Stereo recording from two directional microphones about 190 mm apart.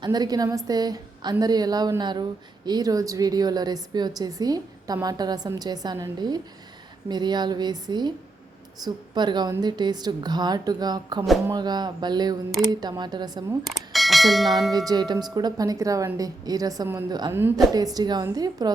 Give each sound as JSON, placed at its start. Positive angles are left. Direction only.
{"t": 0.0, "sound": "a woman's voice", "side_deg": -20}
{"t": 13.7, "sound": "speech", "side_deg": 0}
{"t": 14.7, "sound": "a woman's voice", "side_deg": -20}